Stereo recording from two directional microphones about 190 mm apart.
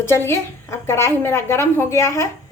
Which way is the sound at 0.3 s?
15° left (ahead or behind).